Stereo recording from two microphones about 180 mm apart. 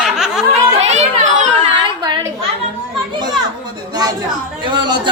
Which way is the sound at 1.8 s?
25° right (ahead or behind).